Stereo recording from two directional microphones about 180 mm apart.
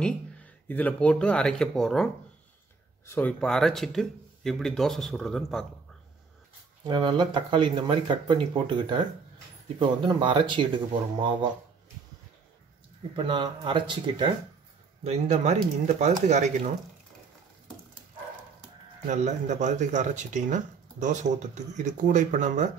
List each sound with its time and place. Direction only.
0.0 s speech: 10° left (ahead or behind)
3.1 s speech: 10° left (ahead or behind)
6.8 s speech: 25° right (ahead or behind)
13.1 s speech: 25° right (ahead or behind)
15.0 s speech: 35° right (ahead or behind)
19.0 s speech: 40° right (ahead or behind)